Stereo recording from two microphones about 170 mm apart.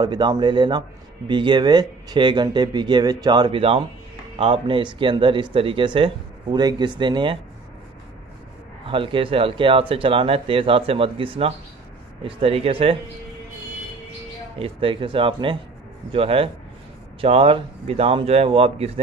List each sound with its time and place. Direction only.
0.0 s a man's voice: 25° right (ahead or behind)
8.8 s speech: 30° right (ahead or behind)
14.6 s speech: 30° right (ahead or behind)